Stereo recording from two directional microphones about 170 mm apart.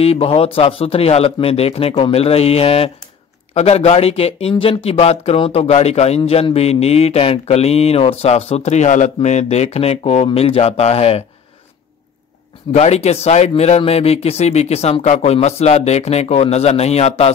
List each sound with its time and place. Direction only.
0.0 s speech: 35° left (ahead or behind)
12.7 s speech: 40° left (ahead or behind)